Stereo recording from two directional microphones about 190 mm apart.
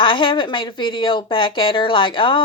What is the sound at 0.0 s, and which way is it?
A woman's voice, 25° left (ahead or behind).